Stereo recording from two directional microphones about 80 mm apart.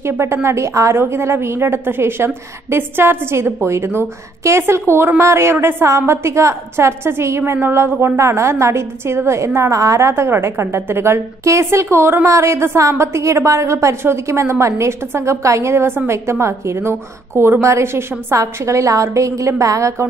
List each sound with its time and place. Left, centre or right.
0.0 s a woman's voice: right